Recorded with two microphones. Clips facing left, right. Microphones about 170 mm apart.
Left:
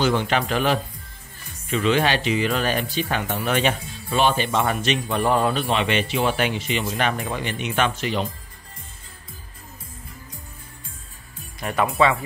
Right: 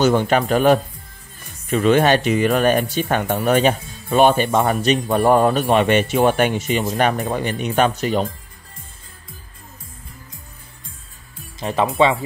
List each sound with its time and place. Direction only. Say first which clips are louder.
0.0 s speech: right 5 dB; 45° right (ahead or behind)
11.6 s speech: right 3 dB; 30° right (ahead or behind)